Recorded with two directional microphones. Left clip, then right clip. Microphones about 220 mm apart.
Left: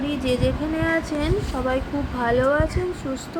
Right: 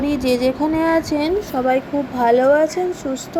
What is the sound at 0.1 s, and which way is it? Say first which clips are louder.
Speech: right 5 dB; 20° right (ahead or behind).